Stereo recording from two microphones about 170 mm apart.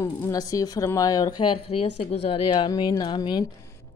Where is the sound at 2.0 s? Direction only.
35° left (ahead or behind).